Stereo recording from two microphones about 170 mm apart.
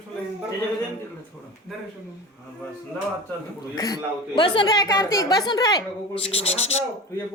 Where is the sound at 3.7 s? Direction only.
25° left (ahead or behind).